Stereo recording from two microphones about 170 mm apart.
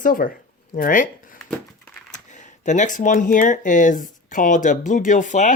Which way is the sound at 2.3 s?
45° left (ahead or behind).